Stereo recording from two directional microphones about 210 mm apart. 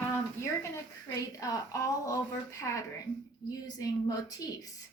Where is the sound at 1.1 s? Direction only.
15° left (ahead or behind).